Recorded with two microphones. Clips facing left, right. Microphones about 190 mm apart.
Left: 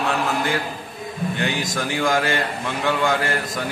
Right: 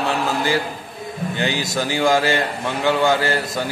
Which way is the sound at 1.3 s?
30° right (ahead or behind).